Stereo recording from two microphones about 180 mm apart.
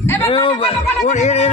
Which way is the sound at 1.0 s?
40° left (ahead or behind).